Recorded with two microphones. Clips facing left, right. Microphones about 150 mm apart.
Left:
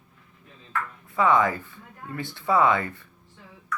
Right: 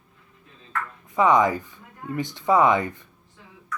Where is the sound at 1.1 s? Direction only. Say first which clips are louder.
Right 3 dB; 15° right (ahead or behind).